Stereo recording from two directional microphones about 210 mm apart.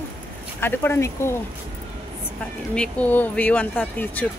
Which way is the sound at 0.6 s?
10° left (ahead or behind).